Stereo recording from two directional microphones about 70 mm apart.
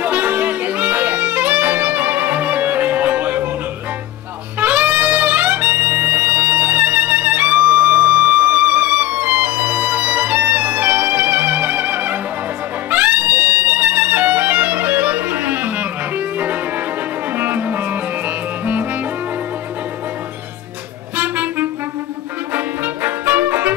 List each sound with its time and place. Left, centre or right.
0.0 s music: right
4.6 s music: centre
17.4 s music: right
21.2 s music: right
23.0 s brass instrument: right